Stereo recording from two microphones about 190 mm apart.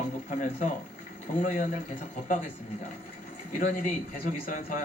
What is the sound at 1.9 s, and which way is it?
Speech, 40° left (ahead or behind).